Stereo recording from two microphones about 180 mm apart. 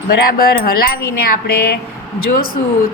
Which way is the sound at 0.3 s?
55° left (ahead or behind).